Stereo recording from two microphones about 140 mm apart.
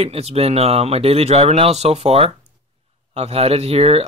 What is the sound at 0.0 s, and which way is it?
Speech, 45° right (ahead or behind).